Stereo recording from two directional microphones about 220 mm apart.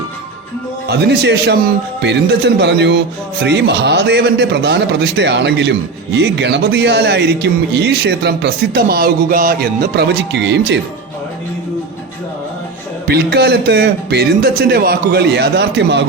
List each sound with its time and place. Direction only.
0.9 s speech: 50° right (ahead or behind)
13.1 s speech: 45° right (ahead or behind)